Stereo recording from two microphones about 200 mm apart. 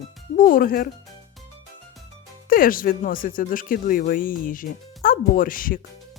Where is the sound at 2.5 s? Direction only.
45° left (ahead or behind).